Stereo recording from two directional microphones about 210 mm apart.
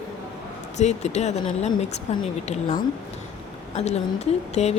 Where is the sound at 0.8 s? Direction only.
35° left (ahead or behind).